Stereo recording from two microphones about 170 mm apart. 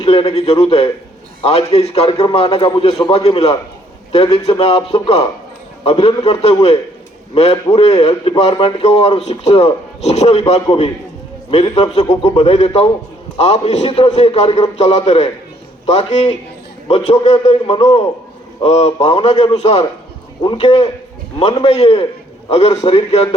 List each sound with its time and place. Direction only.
0.0 s a man's voice: 30° left (ahead or behind)